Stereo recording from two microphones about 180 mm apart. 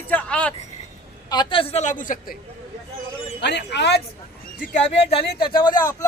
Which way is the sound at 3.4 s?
70° left (ahead or behind).